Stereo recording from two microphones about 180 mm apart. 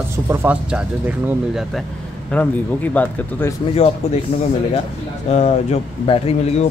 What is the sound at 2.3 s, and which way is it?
Speech, 10° left (ahead or behind).